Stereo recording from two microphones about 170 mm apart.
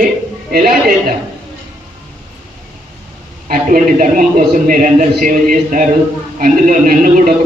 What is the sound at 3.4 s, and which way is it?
A man's voice, 60° right (ahead or behind).